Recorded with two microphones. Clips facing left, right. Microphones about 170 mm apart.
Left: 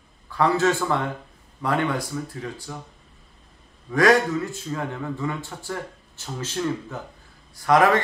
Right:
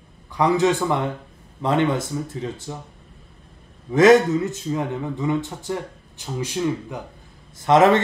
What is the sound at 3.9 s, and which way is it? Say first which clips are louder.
Speech: right 5 dB; 20° right (ahead or behind).